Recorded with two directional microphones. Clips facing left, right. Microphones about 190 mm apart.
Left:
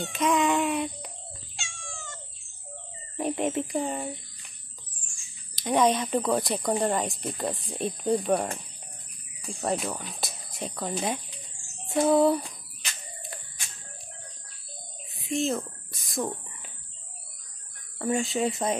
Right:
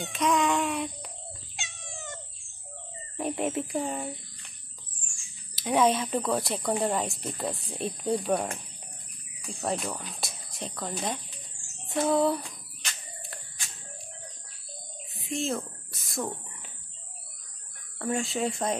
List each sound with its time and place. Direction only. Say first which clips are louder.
0.1 s speech: left 1 dB; centre (ahead or behind)
1.6 s cat: right 1 dB; 20° right (ahead or behind)
3.2 s speech: left 2 dB; centre (ahead or behind)
5.6 s speech: left 1 dB; 5° right (ahead or behind)
9.6 s speech: left 2 dB; 5° left (ahead or behind)
13.3 s a sound: left 2 dB; centre (ahead or behind)
15.2 s a sound: left 3 dB; 5° right (ahead or behind)
17.9 s speech: left 3 dB; centre (ahead or behind)